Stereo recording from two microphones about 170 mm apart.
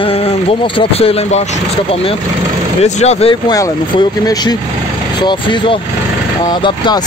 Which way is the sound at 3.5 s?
25° left (ahead or behind).